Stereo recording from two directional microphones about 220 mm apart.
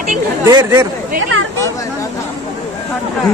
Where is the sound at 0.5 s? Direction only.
15° right (ahead or behind).